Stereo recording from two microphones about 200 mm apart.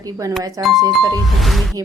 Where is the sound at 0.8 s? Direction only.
20° right (ahead or behind).